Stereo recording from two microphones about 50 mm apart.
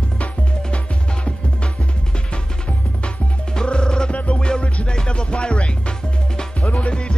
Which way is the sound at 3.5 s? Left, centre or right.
Centre.